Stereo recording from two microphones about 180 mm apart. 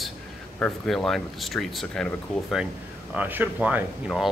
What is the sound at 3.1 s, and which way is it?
Speech, 10° right (ahead or behind).